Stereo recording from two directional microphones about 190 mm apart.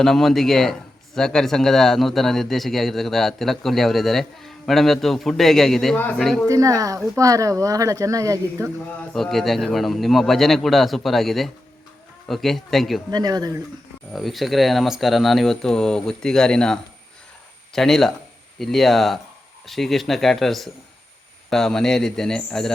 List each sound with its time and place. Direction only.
0.0 s a man's voice: centre (ahead or behind)
6.5 s speech: 15° right (ahead or behind)
9.0 s a man's voice: centre (ahead or behind)
13.1 s speech: 20° right (ahead or behind)
14.1 s a man's voice: centre (ahead or behind)